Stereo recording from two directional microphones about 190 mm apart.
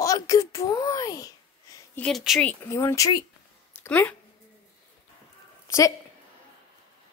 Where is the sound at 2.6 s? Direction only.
15° left (ahead or behind).